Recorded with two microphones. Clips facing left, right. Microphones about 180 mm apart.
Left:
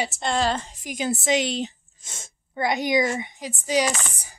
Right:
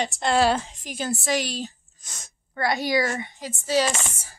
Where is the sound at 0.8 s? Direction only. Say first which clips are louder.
Left 5 dB; 15° left (ahead or behind).